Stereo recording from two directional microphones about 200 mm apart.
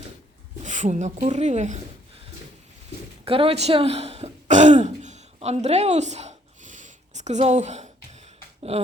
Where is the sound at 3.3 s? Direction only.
25° right (ahead or behind).